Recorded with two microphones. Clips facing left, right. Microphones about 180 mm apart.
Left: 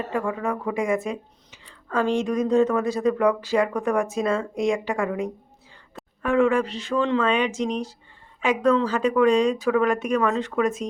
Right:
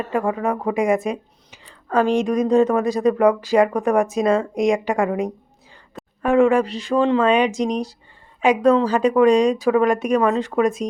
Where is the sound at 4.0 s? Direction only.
15° right (ahead or behind).